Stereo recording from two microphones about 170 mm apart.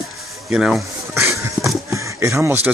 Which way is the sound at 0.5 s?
Centre (ahead or behind).